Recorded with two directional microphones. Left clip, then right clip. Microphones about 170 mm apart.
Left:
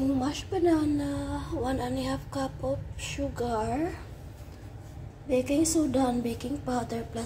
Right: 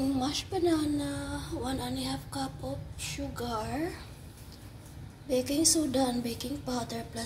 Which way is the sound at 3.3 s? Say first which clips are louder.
Left 5 dB; 10° left (ahead or behind).